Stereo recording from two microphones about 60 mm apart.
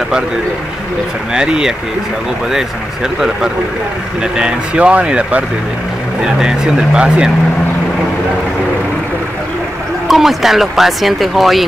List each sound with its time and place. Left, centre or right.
1.3 s speech: centre
4.2 s speech: centre
10.0 s speech: centre